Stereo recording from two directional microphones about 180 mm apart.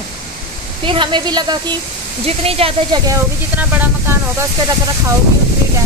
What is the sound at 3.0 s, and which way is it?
Speech, 15° right (ahead or behind).